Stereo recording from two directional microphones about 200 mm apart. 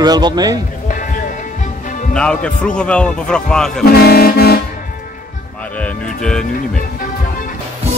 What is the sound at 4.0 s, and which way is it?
Speech, 50° left (ahead or behind).